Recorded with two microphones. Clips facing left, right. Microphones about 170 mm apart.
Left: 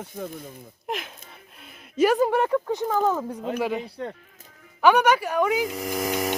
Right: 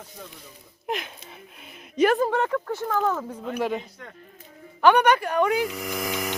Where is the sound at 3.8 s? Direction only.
30° left (ahead or behind).